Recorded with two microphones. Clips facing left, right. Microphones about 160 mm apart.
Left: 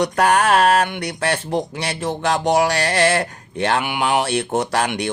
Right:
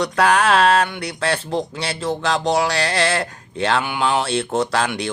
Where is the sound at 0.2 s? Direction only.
45° left (ahead or behind).